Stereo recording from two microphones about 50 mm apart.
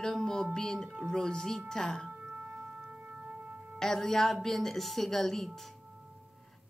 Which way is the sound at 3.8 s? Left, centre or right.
Centre.